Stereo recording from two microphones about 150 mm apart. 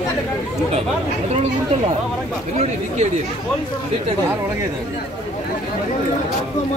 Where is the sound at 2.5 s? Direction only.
50° right (ahead or behind).